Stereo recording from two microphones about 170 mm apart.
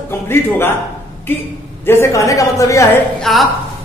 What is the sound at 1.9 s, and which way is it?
A woman's voice, 15° left (ahead or behind).